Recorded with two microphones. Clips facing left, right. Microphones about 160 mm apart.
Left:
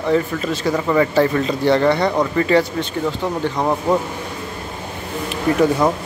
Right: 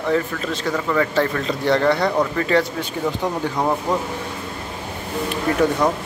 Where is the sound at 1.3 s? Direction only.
Centre (ahead or behind).